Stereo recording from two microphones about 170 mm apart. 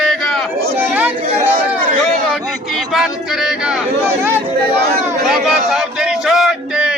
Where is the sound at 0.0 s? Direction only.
Centre (ahead or behind).